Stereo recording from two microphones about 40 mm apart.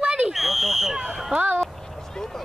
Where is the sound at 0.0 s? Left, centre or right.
Right.